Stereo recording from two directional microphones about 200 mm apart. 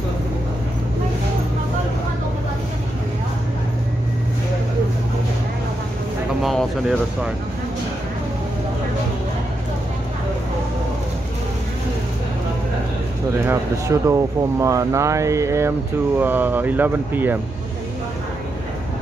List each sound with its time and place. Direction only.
6.4 s speech: centre (ahead or behind)
13.4 s speech: 15° right (ahead or behind)